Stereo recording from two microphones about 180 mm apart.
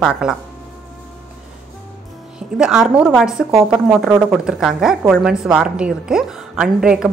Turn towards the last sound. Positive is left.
turn(degrees=-5)  # may be behind; listen again after turning